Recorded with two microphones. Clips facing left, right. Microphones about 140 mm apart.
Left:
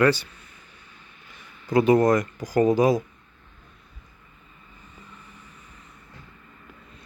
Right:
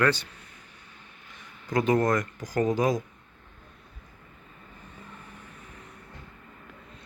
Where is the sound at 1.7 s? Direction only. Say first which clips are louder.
Left 6 dB; 10° left (ahead or behind).